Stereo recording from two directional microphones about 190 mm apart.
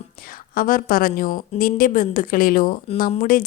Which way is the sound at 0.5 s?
50° left (ahead or behind).